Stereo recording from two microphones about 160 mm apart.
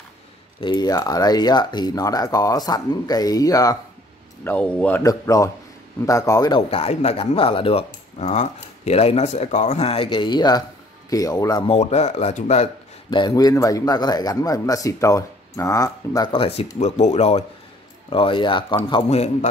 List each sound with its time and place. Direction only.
0.6 s speech: 25° left (ahead or behind)
4.5 s speech: 10° left (ahead or behind)
5.0 s speech: 20° left (ahead or behind)
6.7 s speech: 40° left (ahead or behind); by 11.7 s 25° left (ahead or behind)
11.7 s speech: 45° left (ahead or behind)
13.1 s speech: 25° left (ahead or behind)
16.3 s speech: 35° left (ahead or behind)